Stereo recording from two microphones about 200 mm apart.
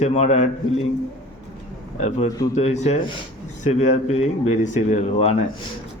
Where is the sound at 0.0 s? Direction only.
35° left (ahead or behind).